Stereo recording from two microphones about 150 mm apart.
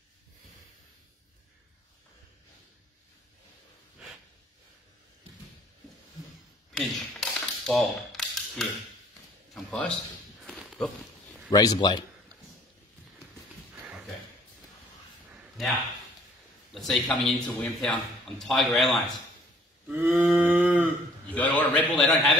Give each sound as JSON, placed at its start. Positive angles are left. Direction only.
{"t": 6.7, "sound": "a sound", "side_deg": 5}
{"t": 11.5, "sound": "a man's voice", "side_deg": 25}
{"t": 16.7, "sound": "a man's voice", "side_deg": 0}
{"t": 19.9, "sound": "cattle", "side_deg": -10}
{"t": 20.2, "sound": "a sound", "side_deg": -5}
{"t": 21.4, "sound": "a man's voice", "side_deg": 10}